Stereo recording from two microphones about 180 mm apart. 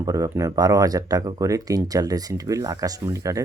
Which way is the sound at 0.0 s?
20° right (ahead or behind).